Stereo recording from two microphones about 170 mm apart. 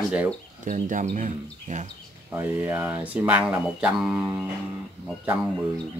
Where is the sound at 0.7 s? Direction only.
50° right (ahead or behind).